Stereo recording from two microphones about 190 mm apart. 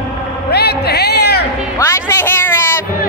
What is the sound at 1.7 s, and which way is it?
Music, 15° left (ahead or behind).